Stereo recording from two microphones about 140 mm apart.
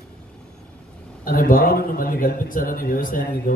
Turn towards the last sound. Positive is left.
turn(degrees=80)